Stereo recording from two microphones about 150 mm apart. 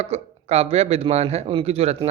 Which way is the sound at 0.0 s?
45° right (ahead or behind).